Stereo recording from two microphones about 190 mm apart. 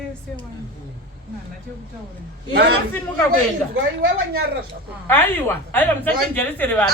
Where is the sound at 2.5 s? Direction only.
60° right (ahead or behind).